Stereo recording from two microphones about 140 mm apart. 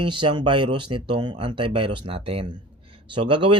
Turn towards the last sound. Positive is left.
turn(degrees=-35)  # may be behind; listen again after turning